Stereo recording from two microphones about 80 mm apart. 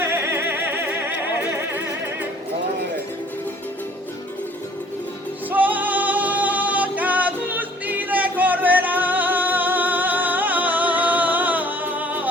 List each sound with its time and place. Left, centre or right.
0.0 s music: right
5.5 s music: right